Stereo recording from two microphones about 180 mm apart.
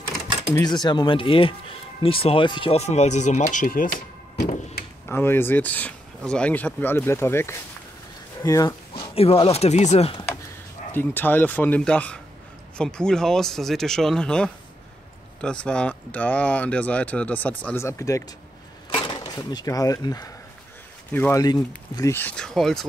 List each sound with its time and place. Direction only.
0.6 s speech: 25° left (ahead or behind); by 4.5 s 50° left (ahead or behind)
5.0 s speech: 10° left (ahead or behind); by 10.2 s 35° left (ahead or behind)
10.9 s speech: 10° left (ahead or behind)